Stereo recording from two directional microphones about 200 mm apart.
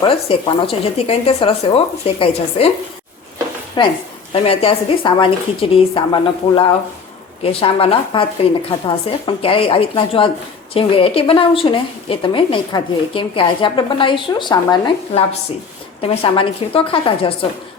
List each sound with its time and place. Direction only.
0.0 s speech: 25° left (ahead or behind)
3.8 s speech: 25° left (ahead or behind)